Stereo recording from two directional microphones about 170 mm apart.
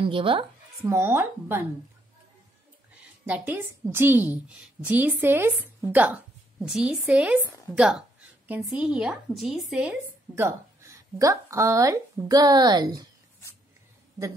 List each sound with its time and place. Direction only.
0.0 s speech: 30° right (ahead or behind)
0.8 s a woman's voice: 15° right (ahead or behind)
3.3 s a woman's voice: 10° right (ahead or behind)